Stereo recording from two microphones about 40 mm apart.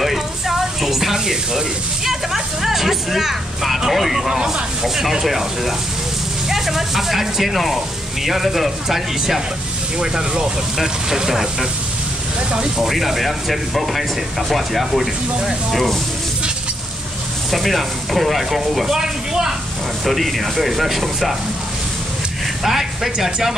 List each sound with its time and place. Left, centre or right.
0.0 s a sound: centre
2.0 s speech: centre
4.3 s speech: centre
4.8 s speech: centre
12.7 s speech: centre
17.5 s speech: centre
18.9 s speech: centre
20.1 s speech: centre
22.6 s speech: centre